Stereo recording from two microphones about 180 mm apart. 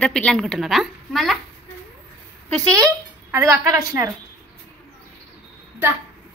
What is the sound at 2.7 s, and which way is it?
A child's voice, 15° right (ahead or behind).